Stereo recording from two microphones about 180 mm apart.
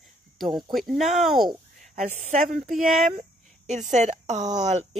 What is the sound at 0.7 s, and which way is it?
Speech, centre (ahead or behind).